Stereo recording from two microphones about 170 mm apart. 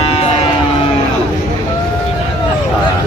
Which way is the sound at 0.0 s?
35° left (ahead or behind).